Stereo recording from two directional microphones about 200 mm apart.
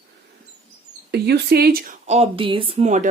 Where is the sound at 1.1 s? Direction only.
55° right (ahead or behind).